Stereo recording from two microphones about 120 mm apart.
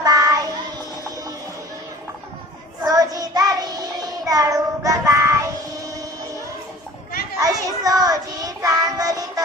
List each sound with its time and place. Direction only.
0.0 s child singing: 30° right (ahead or behind)
2.8 s child singing: 30° right (ahead or behind)
7.3 s child singing: 30° right (ahead or behind)